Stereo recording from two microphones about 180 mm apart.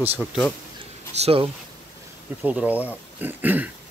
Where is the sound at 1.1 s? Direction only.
35° right (ahead or behind).